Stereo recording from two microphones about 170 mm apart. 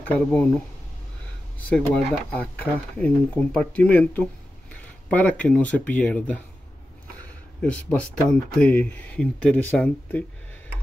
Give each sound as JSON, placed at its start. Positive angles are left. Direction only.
{"t": 0.0, "sound": "speech", "side_deg": 10}
{"t": 1.7, "sound": "speech", "side_deg": 5}
{"t": 7.6, "sound": "speech", "side_deg": 10}